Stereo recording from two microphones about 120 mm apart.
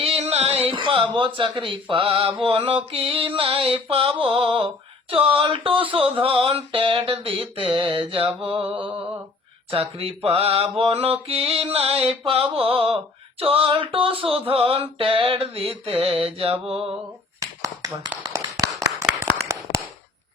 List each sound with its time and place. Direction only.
0.0 s speech: 55° right (ahead or behind)
17.4 s finger snapping: 30° right (ahead or behind)
18.3 s tap: 30° right (ahead or behind)
19.4 s a sound: 25° right (ahead or behind)